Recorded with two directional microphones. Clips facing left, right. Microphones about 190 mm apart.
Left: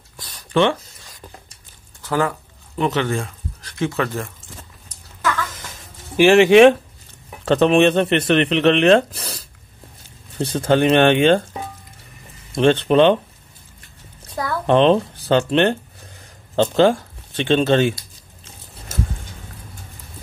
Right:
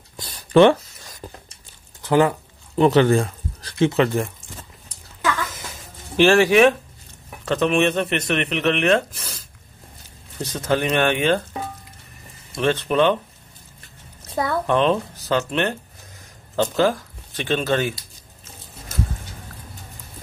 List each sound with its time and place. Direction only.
0.5 s speech: 40° right (ahead or behind)
2.0 s speech: 20° right (ahead or behind)
2.8 s speech: 35° right (ahead or behind)
3.9 s speech: 20° right (ahead or behind)
6.1 s speech: 20° left (ahead or behind)
12.5 s speech: 30° left (ahead or behind)
14.2 s a sound: 25° right (ahead or behind)
14.7 s speech: 30° left (ahead or behind)